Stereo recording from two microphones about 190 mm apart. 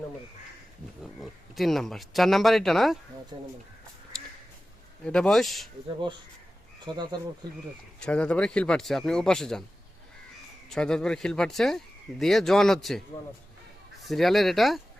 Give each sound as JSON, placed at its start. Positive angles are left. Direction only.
{"t": 1.2, "sound": "speech", "side_deg": 0}
{"t": 3.3, "sound": "speech", "side_deg": -25}
{"t": 5.0, "sound": "speech", "side_deg": 5}
{"t": 6.9, "sound": "speech", "side_deg": -25}
{"t": 7.9, "sound": "speech", "side_deg": 5}
{"t": 10.8, "sound": "speech", "side_deg": 5}
{"t": 14.0, "sound": "speech", "side_deg": 0}